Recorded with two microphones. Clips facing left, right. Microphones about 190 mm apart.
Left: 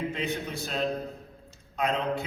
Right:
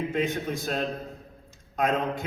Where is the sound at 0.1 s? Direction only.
50° right (ahead or behind).